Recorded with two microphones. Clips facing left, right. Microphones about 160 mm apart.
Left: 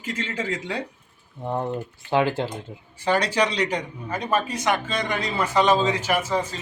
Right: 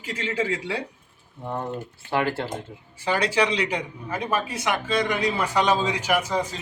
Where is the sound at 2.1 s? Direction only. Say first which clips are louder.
Left 3 dB; 20° left (ahead or behind).